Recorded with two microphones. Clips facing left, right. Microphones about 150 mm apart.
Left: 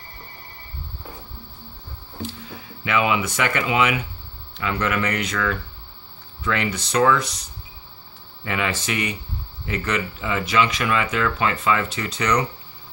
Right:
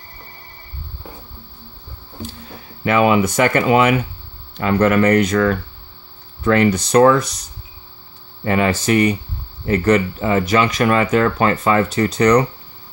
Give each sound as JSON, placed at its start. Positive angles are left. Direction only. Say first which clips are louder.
{"t": 2.8, "sound": "speech", "louder": "right 7 dB", "side_deg": -45}
{"t": 8.5, "sound": "speech", "louder": "right 9 dB", "side_deg": -40}